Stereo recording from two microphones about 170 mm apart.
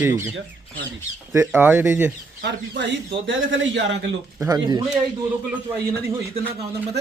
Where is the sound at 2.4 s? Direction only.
90° right.